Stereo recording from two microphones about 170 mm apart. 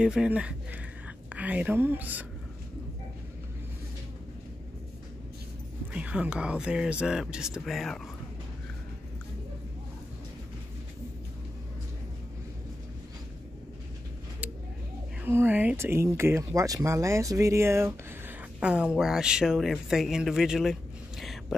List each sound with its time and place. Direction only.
0.0 s a woman's voice: 5° right (ahead or behind)
5.9 s speech: 5° right (ahead or behind)
15.2 s speech: 10° right (ahead or behind)
21.2 s a sound: centre (ahead or behind)